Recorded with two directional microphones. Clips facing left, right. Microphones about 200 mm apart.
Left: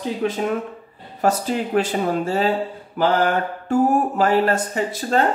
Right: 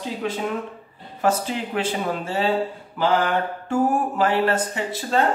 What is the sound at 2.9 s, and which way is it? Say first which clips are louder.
Mantra: left 2 dB; 40° left (ahead or behind).